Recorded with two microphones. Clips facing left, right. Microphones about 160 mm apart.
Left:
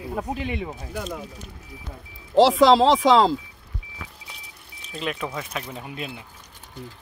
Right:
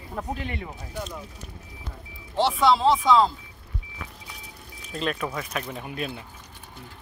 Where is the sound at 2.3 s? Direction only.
90° left.